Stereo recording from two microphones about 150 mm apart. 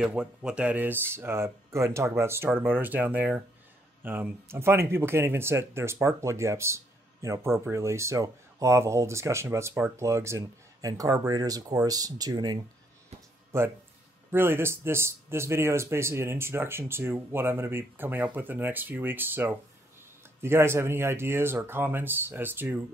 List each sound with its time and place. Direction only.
0.0 s speech: 5° right (ahead or behind); by 12.5 s 25° right (ahead or behind)
14.3 s speech: 15° right (ahead or behind)